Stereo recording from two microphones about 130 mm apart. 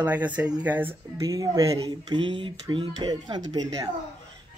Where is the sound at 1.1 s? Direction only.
25° right (ahead or behind).